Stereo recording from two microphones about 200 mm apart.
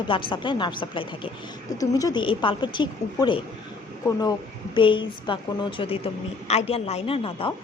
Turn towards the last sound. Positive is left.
turn(degrees=30)  # may be behind; listen again after turning